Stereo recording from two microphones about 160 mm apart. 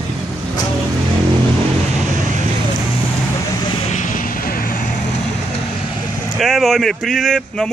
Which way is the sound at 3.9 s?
50° left (ahead or behind).